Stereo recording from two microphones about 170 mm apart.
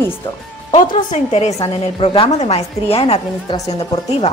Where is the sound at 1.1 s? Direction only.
40° left (ahead or behind).